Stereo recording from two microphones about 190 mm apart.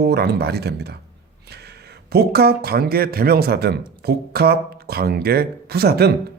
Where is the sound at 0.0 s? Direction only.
60° right (ahead or behind).